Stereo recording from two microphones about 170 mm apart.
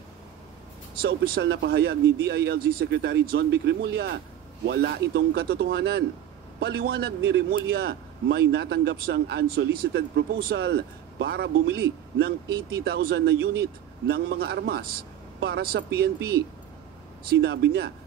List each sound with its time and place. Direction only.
1.0 s a man's voice: 65° right (ahead or behind)
17.2 s a man's voice: 70° right (ahead or behind)